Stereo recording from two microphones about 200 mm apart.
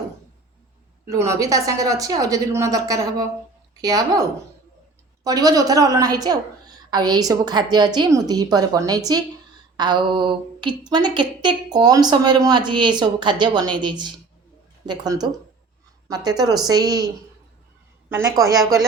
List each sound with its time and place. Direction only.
1.1 s a woman's voice: 15° right (ahead or behind)
5.2 s a woman's voice: 20° right (ahead or behind)
18.1 s a woman's voice: 15° right (ahead or behind)